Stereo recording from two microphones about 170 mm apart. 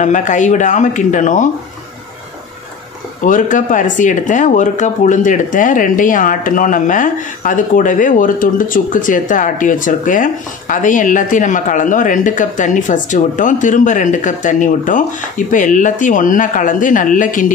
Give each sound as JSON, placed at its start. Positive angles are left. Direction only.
{"t": 0.0, "sound": "speech", "side_deg": 45}
{"t": 3.2, "sound": "speech", "side_deg": 50}